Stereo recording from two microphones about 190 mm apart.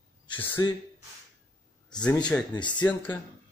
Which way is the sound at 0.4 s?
15° left (ahead or behind).